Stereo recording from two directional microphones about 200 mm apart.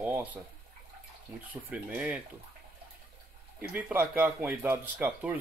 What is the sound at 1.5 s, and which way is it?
Speech, 5° right (ahead or behind).